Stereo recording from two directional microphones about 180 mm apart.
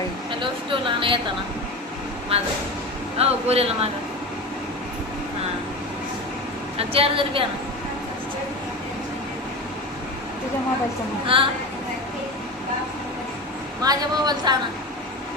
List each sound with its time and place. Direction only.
0.3 s speech: 30° right (ahead or behind)
2.3 s a woman's voice: 35° right (ahead or behind)
6.7 s a woman's voice: 30° right (ahead or behind)
11.3 s a woman's voice: 30° right (ahead or behind)
13.8 s speech: 20° right (ahead or behind)